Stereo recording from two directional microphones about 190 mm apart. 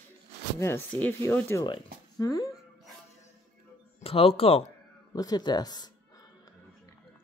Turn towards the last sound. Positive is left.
turn(degrees=20)  # may be behind; listen again after turning